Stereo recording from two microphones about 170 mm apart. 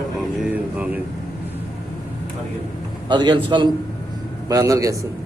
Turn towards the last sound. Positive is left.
turn(degrees=-20)  # may be behind; listen again after turning